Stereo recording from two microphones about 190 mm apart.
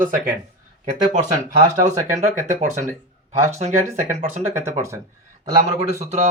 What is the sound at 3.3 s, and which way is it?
Speech, 15° right (ahead or behind).